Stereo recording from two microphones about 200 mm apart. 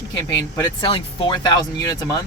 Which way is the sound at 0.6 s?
25° left (ahead or behind).